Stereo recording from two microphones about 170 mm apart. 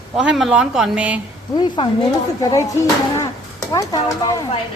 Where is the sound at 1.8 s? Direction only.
30° left (ahead or behind).